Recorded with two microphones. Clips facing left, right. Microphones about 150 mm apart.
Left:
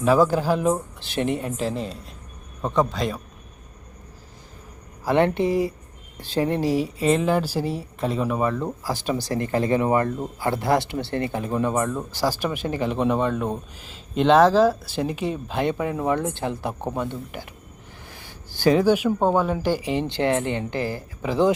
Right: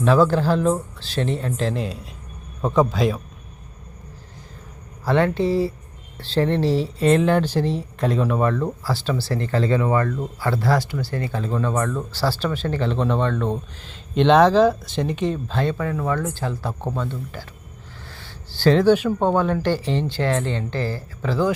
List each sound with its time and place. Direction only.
0.0 s a man's voice: 10° left (ahead or behind)
5.0 s speech: 20° left (ahead or behind)